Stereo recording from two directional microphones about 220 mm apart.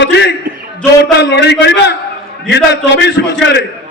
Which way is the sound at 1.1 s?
50° left (ahead or behind).